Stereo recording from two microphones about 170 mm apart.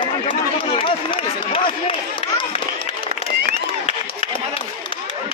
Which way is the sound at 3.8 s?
35° left (ahead or behind).